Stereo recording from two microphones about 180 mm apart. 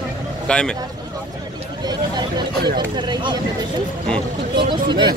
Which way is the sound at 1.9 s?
25° right (ahead or behind).